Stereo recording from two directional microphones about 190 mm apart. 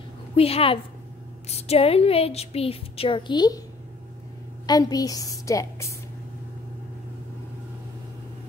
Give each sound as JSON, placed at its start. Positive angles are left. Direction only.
{"t": 0.4, "sound": "a woman's voice", "side_deg": 30}
{"t": 4.6, "sound": "a woman's voice", "side_deg": 20}